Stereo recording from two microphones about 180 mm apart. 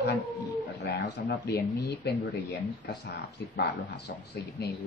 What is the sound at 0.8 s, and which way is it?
Speech, 65° left (ahead or behind).